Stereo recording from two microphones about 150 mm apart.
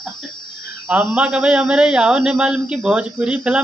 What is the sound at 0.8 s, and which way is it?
A man's voice, 10° right (ahead or behind).